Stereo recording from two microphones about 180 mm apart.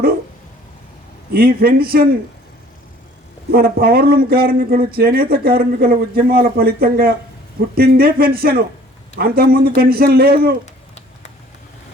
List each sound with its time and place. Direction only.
1.3 s speech: 55° right (ahead or behind)
3.5 s speech: 60° right (ahead or behind)